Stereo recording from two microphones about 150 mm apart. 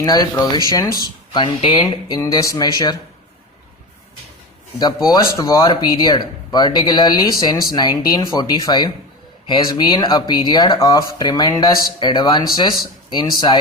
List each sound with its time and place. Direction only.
0.0 s speech: 25° left (ahead or behind)
5.0 s speech: 25° left (ahead or behind)